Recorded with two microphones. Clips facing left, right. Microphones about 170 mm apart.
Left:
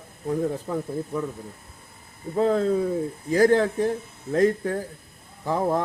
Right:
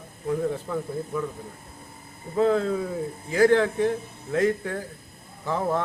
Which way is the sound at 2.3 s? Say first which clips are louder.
Left 1 dB; 35° left (ahead or behind).